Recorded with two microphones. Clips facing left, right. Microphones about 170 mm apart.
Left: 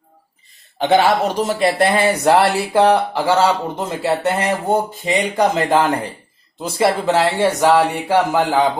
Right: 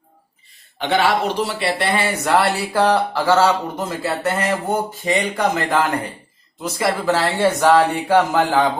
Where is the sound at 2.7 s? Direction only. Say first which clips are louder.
Left 3 dB; 20° left (ahead or behind).